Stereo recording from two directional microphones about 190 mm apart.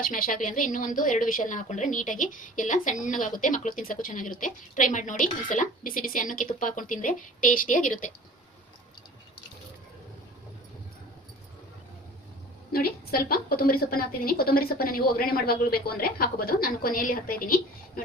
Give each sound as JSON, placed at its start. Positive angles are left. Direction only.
{"t": 0.0, "sound": "a woman's voice", "side_deg": 45}
{"t": 12.7, "sound": "a woman's voice", "side_deg": 50}